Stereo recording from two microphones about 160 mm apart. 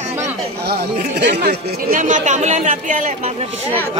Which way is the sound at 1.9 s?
50° right (ahead or behind).